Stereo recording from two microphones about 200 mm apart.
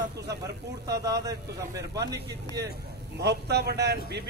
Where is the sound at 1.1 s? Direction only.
15° right (ahead or behind).